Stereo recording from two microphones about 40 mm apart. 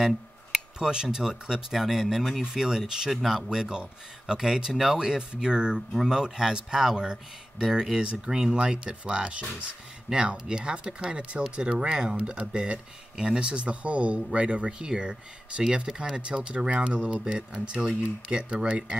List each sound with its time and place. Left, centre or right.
0.0 s a sound: centre
1.5 s speech: centre
3.4 s speech: centre